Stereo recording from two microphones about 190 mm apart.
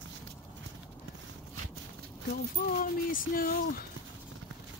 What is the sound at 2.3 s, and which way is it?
Speech, 50° left (ahead or behind).